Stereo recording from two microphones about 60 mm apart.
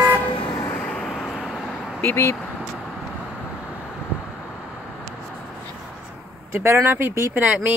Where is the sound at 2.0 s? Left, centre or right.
Left.